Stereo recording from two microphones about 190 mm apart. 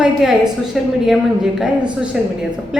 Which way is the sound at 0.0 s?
Centre (ahead or behind).